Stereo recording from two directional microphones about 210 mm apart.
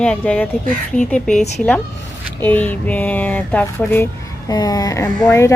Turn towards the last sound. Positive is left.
turn(degrees=15)  # may be behind; listen again after turning